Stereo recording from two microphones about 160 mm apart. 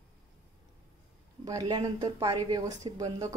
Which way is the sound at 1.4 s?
25° right (ahead or behind).